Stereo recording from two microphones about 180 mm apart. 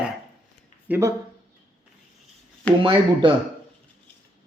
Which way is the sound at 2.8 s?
30° right (ahead or behind).